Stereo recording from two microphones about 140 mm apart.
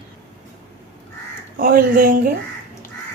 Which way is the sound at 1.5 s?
90° right.